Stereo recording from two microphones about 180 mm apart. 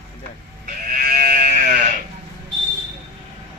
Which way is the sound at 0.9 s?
55° right (ahead or behind).